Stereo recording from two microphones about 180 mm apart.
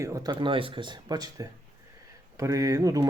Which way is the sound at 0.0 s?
20° right (ahead or behind).